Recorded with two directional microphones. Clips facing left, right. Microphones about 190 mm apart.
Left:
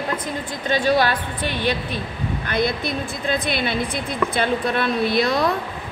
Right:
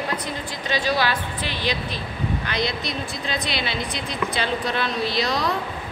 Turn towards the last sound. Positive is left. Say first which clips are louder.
# left 5 dB
turn(degrees=55)  # may be behind; listen again after turning